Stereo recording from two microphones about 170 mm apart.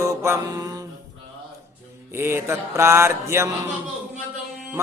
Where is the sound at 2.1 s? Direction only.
15° right (ahead or behind).